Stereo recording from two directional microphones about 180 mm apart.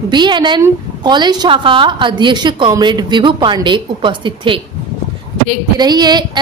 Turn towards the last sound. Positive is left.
turn(degrees=-25)  # may be behind; listen again after turning